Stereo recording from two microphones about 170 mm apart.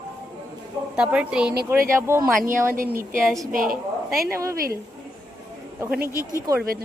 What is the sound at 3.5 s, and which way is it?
Speech, 55° right (ahead or behind).